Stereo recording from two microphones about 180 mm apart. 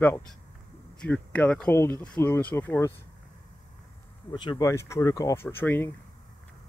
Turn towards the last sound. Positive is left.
turn(degrees=10)  # may be behind; listen again after turning